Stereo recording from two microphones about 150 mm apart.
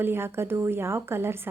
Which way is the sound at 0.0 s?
15° right (ahead or behind).